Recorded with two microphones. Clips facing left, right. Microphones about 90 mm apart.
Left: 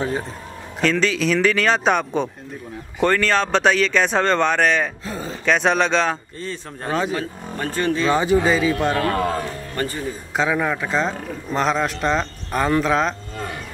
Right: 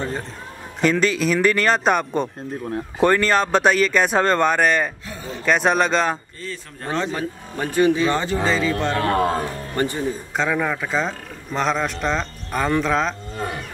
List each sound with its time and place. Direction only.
0.7 s a man's voice: 5° right (ahead or behind)
5.0 s a sound: 35° left (ahead or behind)
5.4 s a man's voice: 5° right (ahead or behind)
6.4 s speech: 30° left (ahead or behind)
6.9 s speech: 10° left (ahead or behind)
7.2 s speech: 15° right (ahead or behind)
8.1 s speech: 10° left (ahead or behind)
9.0 s speech: 30° right (ahead or behind)
10.3 s a man's voice: 5° left (ahead or behind)